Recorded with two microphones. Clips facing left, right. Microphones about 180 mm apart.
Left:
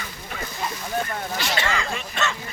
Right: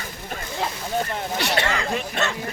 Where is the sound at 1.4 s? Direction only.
65° right (ahead or behind).